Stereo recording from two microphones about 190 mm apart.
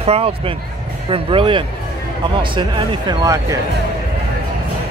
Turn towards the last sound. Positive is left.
turn(degrees=-20)  # may be behind; listen again after turning